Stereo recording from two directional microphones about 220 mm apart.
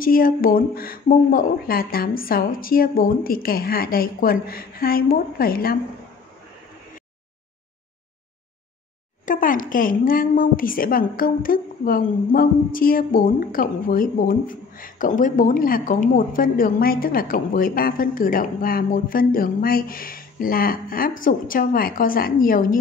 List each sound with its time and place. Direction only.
0.0 s a woman's voice: 40° left (ahead or behind)
9.2 s a woman's voice: 35° left (ahead or behind)